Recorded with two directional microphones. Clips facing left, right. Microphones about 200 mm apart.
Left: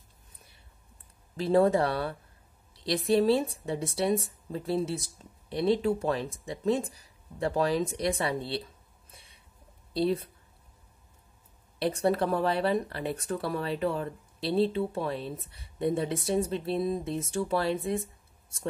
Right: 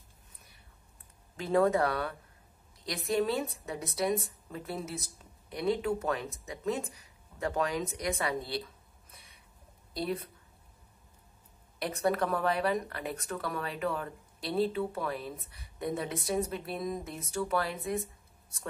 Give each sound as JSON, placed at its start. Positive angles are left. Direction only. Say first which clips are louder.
{"t": 1.3, "sound": "speech", "louder": "left 3 dB", "side_deg": 30}
{"t": 9.1, "sound": "a sound", "louder": "left 2 dB", "side_deg": 30}
{"t": 9.9, "sound": "speech", "louder": "left 7 dB", "side_deg": 30}
{"t": 11.8, "sound": "speech", "louder": "left 4 dB", "side_deg": 30}